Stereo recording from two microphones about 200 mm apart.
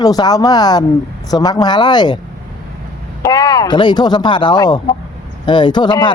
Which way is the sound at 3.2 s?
20° left (ahead or behind).